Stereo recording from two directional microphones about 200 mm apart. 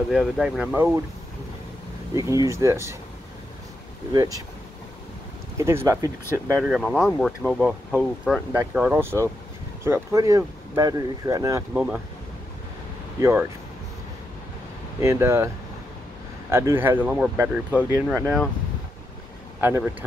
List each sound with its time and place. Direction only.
0.1 s speech: 5° right (ahead or behind)
2.1 s speech: 15° right (ahead or behind)
4.1 s speech: 20° right (ahead or behind)
5.6 s speech: 15° right (ahead or behind)
11.7 s speech: 5° right (ahead or behind)
13.2 s speech: 10° right (ahead or behind)
15.0 s speech: 15° right (ahead or behind)
18.1 s speech: 5° left (ahead or behind)
19.6 s speech: 10° right (ahead or behind)